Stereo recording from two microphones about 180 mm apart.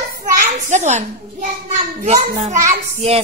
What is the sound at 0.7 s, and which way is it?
A child's voice, 40° right (ahead or behind).